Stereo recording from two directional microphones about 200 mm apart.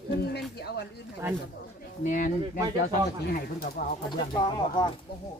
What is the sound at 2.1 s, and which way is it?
Speech, 40° left (ahead or behind).